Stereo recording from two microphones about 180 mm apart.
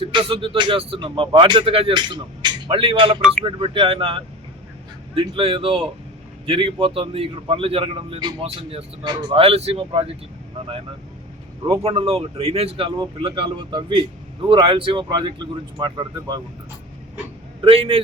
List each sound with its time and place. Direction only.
0.0 s a man's voice: 30° right (ahead or behind)
11.8 s a man's voice: 30° right (ahead or behind)
17.6 s a man's voice: 30° right (ahead or behind)